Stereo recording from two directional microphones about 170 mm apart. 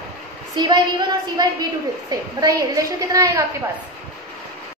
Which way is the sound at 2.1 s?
20° right (ahead or behind).